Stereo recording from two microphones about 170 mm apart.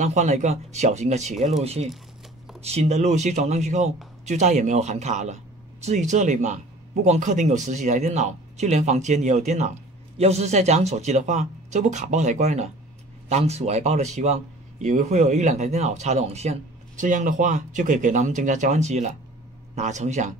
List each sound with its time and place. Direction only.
0.0 s a man's voice: 45° right (ahead or behind)